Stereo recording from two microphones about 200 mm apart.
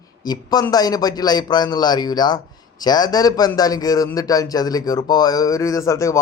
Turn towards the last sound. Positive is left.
turn(degrees=15)  # may be behind; listen again after turning